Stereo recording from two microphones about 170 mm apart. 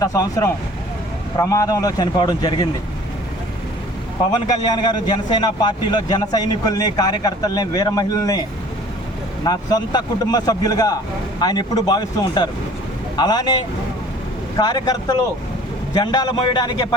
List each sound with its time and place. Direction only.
0.0 s a man's voice: 20° left (ahead or behind)
4.3 s a man's voice: 25° left (ahead or behind)
9.4 s a man's voice: 25° left (ahead or behind)
16.0 s a man's voice: 25° left (ahead or behind)